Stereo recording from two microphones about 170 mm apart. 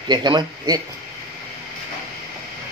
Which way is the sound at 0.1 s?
25° right (ahead or behind).